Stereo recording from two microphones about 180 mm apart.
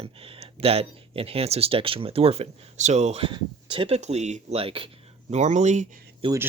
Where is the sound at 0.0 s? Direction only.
30° right (ahead or behind).